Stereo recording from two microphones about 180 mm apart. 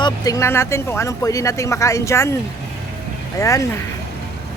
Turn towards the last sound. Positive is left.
turn(degrees=15)  # may be behind; listen again after turning